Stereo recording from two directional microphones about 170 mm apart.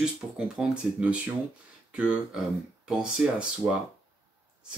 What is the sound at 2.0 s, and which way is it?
Speech, 5° right (ahead or behind).